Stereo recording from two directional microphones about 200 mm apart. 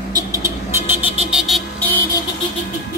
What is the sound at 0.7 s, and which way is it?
Vehicle, 10° right (ahead or behind).